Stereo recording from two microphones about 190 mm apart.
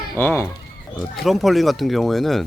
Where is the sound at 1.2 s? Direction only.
Centre (ahead or behind).